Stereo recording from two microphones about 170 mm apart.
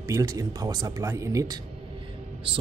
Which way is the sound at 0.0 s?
20° right (ahead or behind).